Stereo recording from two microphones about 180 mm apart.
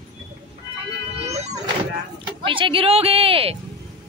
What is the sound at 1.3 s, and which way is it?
Wail, 40° right (ahead or behind).